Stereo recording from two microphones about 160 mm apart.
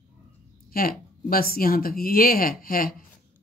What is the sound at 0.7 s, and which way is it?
Speech, 65° left (ahead or behind).